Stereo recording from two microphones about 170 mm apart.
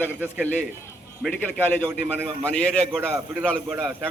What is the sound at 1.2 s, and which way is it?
Speech, centre (ahead or behind).